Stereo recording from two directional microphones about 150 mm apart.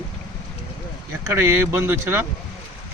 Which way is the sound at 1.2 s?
15° right (ahead or behind).